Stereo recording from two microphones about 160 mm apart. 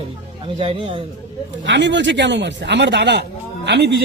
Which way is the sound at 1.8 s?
90° right.